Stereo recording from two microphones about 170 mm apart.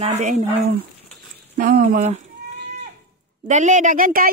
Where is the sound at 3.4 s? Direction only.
45° right (ahead or behind).